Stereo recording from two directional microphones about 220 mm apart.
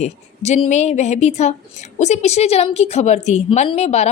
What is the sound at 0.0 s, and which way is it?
A woman's voice, 30° left (ahead or behind).